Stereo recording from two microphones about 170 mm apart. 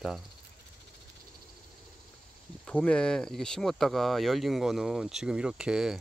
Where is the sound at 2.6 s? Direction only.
5° left (ahead or behind).